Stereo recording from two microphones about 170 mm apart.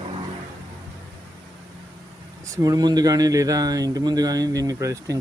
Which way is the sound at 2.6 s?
20° right (ahead or behind).